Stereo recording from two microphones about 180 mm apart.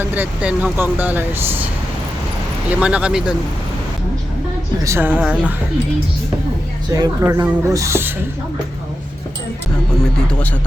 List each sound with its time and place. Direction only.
0.0 s speech: 10° right (ahead or behind)
2.6 s speech: 5° right (ahead or behind)
4.8 s speech: 15° right (ahead or behind)
6.9 s speech: 20° right (ahead or behind)